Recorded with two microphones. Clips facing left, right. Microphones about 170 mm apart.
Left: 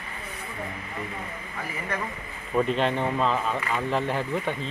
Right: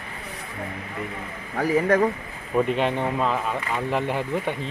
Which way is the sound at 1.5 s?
85° right.